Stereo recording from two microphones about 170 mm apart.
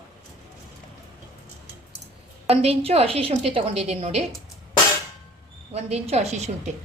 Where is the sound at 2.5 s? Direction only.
35° right (ahead or behind).